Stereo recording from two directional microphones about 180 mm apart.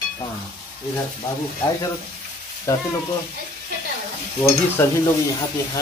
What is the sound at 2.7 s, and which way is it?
Frying, 15° left (ahead or behind).